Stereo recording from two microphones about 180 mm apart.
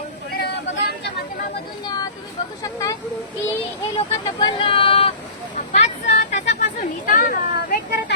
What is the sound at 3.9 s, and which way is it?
Speech, 25° left (ahead or behind).